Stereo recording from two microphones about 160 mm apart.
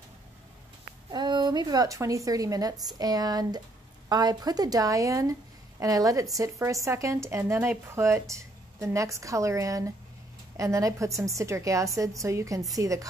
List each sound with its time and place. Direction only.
1.1 s a woman's voice: 25° right (ahead or behind)